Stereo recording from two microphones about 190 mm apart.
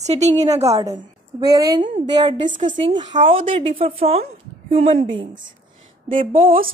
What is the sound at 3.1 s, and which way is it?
A woman's voice, 30° right (ahead or behind).